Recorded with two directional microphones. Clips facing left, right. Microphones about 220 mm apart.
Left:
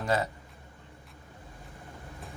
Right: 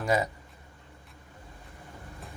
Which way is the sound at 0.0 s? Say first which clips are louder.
Right 2 dB; 10° right (ahead or behind).